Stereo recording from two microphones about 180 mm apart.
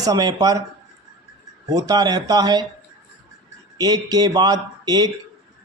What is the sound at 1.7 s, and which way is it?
Speech, 20° right (ahead or behind).